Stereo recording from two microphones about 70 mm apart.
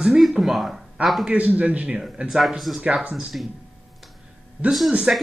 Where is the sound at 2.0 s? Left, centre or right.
Centre.